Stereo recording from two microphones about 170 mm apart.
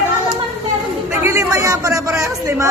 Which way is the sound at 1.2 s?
15° right (ahead or behind).